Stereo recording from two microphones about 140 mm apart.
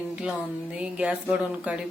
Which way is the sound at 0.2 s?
5° right (ahead or behind).